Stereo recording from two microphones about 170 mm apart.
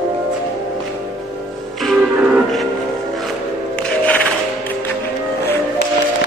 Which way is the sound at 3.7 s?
5° left (ahead or behind).